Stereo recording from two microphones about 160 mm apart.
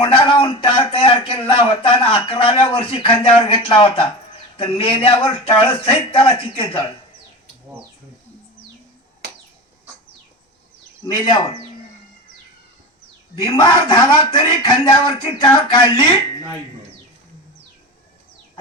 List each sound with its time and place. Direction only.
0.0 s a man's voice: 30° left (ahead or behind)
11.0 s a man's voice: 25° left (ahead or behind)
13.3 s a man's voice: 25° left (ahead or behind)